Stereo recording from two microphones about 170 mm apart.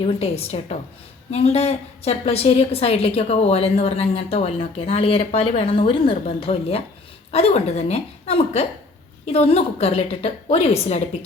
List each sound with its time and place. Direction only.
0.2 s a woman's voice: 35° left (ahead or behind)